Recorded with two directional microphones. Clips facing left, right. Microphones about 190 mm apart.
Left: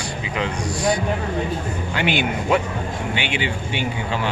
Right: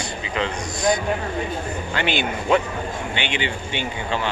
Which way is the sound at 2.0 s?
10° left (ahead or behind).